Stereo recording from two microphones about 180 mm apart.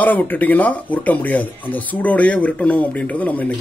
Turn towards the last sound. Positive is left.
turn(degrees=10)  # may be behind; listen again after turning